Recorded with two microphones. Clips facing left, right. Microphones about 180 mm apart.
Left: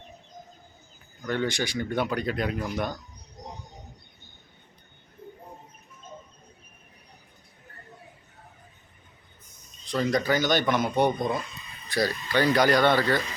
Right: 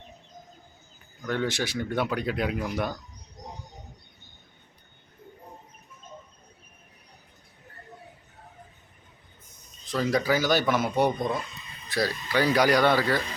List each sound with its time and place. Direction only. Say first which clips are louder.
1.2 s speech: even; centre (ahead or behind)
9.8 s speech: even; centre (ahead or behind)